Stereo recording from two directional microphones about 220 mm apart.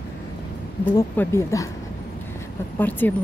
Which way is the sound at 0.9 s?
10° left (ahead or behind).